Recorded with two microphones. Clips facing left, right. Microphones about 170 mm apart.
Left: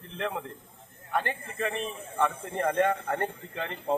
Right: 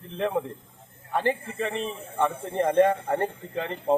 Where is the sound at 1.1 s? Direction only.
30° right (ahead or behind).